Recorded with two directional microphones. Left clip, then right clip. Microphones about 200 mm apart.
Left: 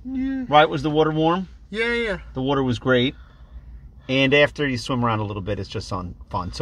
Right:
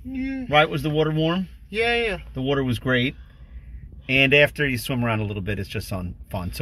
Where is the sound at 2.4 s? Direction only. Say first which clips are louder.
Left 3 dB; 10° right (ahead or behind).